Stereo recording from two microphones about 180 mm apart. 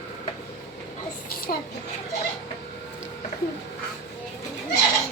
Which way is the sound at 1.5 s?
55° left (ahead or behind).